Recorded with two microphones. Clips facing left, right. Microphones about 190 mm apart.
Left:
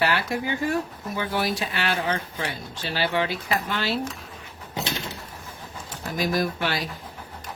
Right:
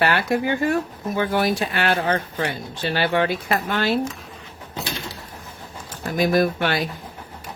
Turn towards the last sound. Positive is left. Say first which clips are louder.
# right 6 dB
turn(degrees=-55)  # may be behind; listen again after turning